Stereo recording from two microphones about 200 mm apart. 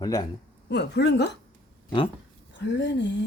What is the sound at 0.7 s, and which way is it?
Speech, 55° left (ahead or behind).